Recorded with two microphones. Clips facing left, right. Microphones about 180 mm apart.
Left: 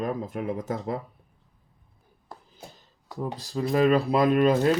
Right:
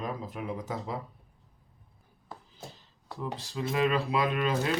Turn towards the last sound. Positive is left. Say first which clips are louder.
# left 8 dB
turn(degrees=40)  # may be behind; listen again after turning